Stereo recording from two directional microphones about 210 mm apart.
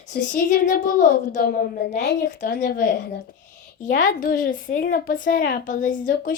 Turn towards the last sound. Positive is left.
turn(degrees=40)  # may be behind; listen again after turning